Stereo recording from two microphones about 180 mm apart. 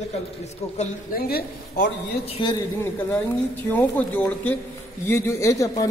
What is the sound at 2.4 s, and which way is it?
Speech, 25° left (ahead or behind).